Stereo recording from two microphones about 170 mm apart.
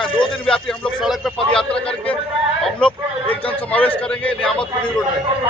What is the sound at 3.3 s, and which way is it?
Speech, 35° left (ahead or behind).